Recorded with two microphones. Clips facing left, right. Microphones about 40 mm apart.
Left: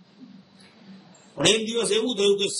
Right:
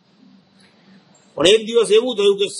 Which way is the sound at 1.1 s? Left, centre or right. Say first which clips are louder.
Even; left.